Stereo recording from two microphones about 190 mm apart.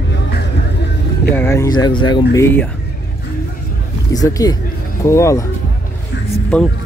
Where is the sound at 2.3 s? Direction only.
10° left (ahead or behind).